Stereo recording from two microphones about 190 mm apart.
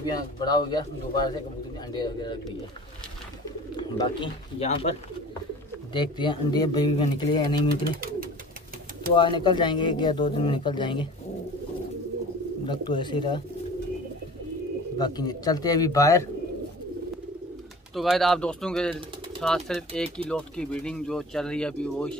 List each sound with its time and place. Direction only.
0.0 s speech: 20° left (ahead or behind)
3.7 s speech: 25° left (ahead or behind)
5.9 s speech: 25° left (ahead or behind)
7.6 s speech: 50° right (ahead or behind)
9.1 s speech: 25° left (ahead or behind)
12.6 s speech: 25° left (ahead or behind)
15.0 s speech: 20° left (ahead or behind)
17.9 s speech: centre (ahead or behind)
19.9 s speech: 30° right (ahead or behind)
20.2 s speech: 5° left (ahead or behind)